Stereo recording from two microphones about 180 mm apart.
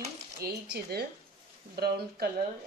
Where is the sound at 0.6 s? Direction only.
60° right (ahead or behind).